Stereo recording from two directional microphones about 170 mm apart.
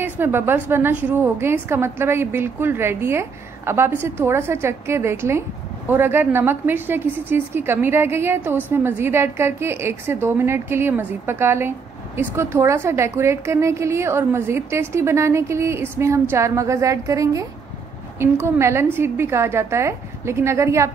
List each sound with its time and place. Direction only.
0.0 s a woman's voice: 10° right (ahead or behind)